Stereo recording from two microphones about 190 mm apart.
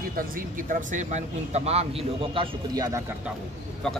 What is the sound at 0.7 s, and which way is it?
A man's voice, 40° right (ahead or behind).